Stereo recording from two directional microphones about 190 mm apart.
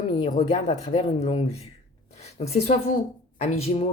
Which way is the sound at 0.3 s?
35° left (ahead or behind).